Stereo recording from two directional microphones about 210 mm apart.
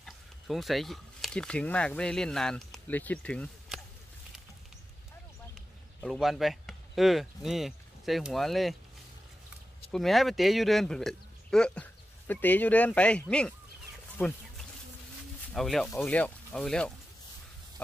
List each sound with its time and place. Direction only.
0.0 s speech: centre (ahead or behind)
5.5 s speech: centre (ahead or behind)
9.8 s speech: centre (ahead or behind)
14.1 s a sound: 5° left (ahead or behind)
15.5 s speech: centre (ahead or behind)